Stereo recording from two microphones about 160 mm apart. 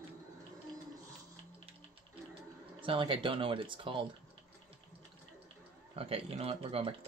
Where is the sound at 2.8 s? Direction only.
30° right (ahead or behind).